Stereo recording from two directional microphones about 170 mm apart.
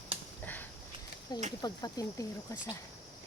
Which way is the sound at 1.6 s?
20° left (ahead or behind).